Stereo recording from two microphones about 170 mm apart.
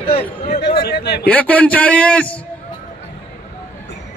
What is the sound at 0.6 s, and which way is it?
Speech, 70° left (ahead or behind).